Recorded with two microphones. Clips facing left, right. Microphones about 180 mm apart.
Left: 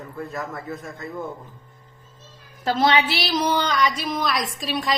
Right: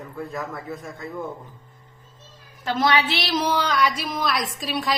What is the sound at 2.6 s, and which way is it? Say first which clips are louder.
Speech: left 2 dB; 35° left (ahead or behind).